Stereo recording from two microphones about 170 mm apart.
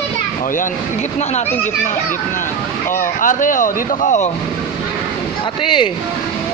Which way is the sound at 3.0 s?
50° left (ahead or behind).